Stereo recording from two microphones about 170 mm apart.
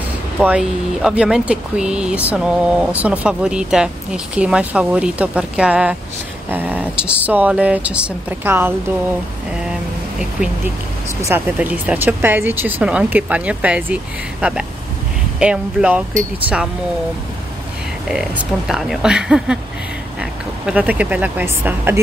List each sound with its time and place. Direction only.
0.4 s speech: 5° right (ahead or behind)
11.2 s speech: 10° right (ahead or behind)
18.7 s speech: centre (ahead or behind)